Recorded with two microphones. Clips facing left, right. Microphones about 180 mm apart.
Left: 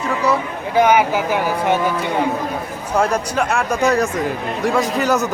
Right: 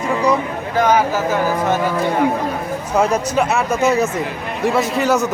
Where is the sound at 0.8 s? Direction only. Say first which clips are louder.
Left 1 dB; 10° left (ahead or behind).